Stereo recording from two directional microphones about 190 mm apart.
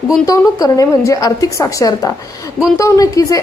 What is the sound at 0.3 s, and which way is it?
A woman's voice, 20° left (ahead or behind).